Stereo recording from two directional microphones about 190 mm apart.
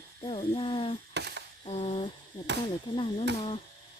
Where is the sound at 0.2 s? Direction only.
30° left (ahead or behind).